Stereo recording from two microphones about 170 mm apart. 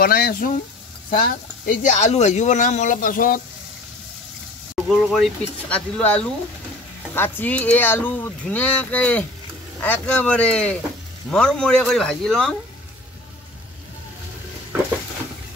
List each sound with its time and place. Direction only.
0.0 s speech: 60° left (ahead or behind)
4.8 s speech: centre (ahead or behind)